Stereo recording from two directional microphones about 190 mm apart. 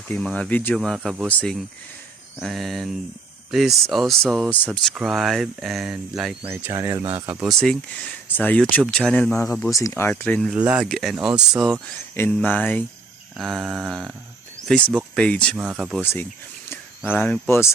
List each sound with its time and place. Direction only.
0.1 s speech: 5° left (ahead or behind); by 7.4 s 20° right (ahead or behind)
7.4 s speech: 5° left (ahead or behind)
10.5 s speech: 5° right (ahead or behind)
12.1 s speech: 10° left (ahead or behind)
15.5 s speech: 5° right (ahead or behind)
16.6 s speech: 10° left (ahead or behind)